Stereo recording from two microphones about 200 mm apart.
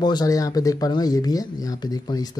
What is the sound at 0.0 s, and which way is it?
Speech, 20° left (ahead or behind).